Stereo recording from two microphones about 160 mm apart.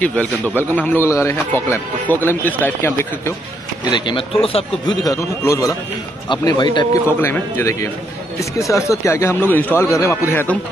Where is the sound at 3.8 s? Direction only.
30° left (ahead or behind).